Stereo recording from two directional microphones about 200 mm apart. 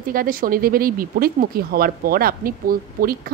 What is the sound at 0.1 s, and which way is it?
Speech, 45° right (ahead or behind).